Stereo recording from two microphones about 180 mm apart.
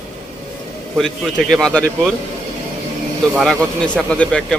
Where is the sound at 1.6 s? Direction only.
5° left (ahead or behind).